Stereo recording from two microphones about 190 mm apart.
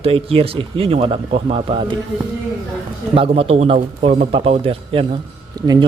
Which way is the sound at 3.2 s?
30° right (ahead or behind).